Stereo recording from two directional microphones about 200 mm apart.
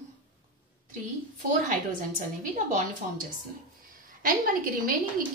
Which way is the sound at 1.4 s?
40° right (ahead or behind).